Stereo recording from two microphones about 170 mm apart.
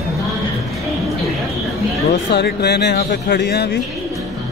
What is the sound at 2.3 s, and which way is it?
Speech, 75° left (ahead or behind).